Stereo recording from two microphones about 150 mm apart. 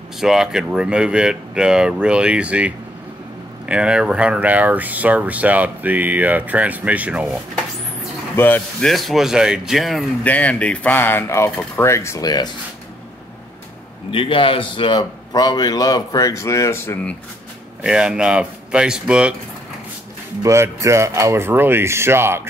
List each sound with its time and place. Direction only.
0.2 s speech: 5° right (ahead or behind)
8.4 s speech: 10° left (ahead or behind)
8.8 s speech: centre (ahead or behind)
10.2 s speech: 10° left (ahead or behind); by 12.4 s 25° left (ahead or behind)
14.1 s a man's voice: 35° left (ahead or behind); by 17.2 s 10° left (ahead or behind)
17.8 s speech: 5° right (ahead or behind)
20.4 s speech: 20° right (ahead or behind)